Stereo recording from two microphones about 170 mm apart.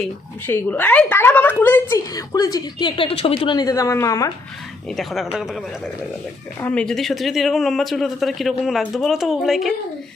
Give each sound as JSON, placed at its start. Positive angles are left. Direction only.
{"t": 0.4, "sound": "a woman's voice", "side_deg": 10}
{"t": 4.9, "sound": "speech", "side_deg": 0}